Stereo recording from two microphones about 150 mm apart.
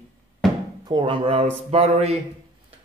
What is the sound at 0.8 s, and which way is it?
Speech, 35° right (ahead or behind).